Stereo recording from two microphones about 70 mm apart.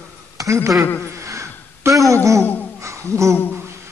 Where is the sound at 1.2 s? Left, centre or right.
Right.